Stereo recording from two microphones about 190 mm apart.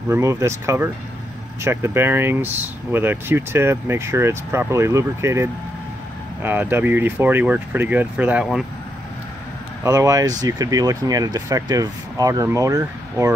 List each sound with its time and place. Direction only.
0.1 s speech: 15° right (ahead or behind)
9.8 s speech: 15° right (ahead or behind)